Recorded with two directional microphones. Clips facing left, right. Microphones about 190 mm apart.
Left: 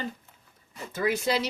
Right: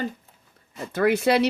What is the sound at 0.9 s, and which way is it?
Speech, 65° right (ahead or behind).